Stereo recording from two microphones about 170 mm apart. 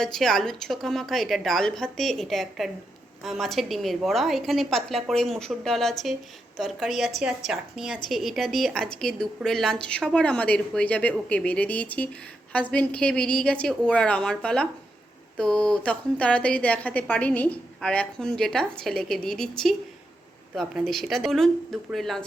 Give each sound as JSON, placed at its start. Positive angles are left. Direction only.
{"t": 0.0, "sound": "a woman's voice", "side_deg": 0}